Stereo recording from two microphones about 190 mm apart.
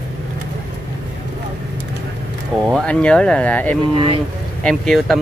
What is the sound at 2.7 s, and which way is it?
Speech, 5° left (ahead or behind).